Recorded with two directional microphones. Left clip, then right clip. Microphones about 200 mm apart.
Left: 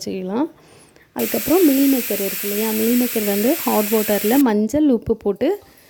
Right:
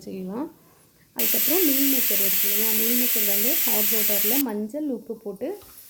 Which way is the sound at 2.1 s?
50° left (ahead or behind).